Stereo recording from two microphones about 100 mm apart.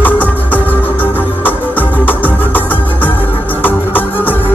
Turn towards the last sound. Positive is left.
turn(degrees=20)  # may be behind; listen again after turning